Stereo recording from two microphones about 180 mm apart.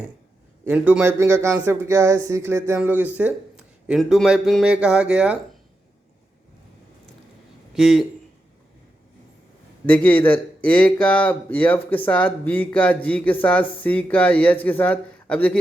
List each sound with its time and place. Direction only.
0.6 s a man's voice: 10° right (ahead or behind)
7.7 s a man's voice: centre (ahead or behind)
9.8 s speech: 10° left (ahead or behind)